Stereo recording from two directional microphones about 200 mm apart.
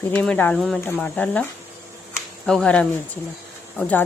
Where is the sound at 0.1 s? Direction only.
5° left (ahead or behind).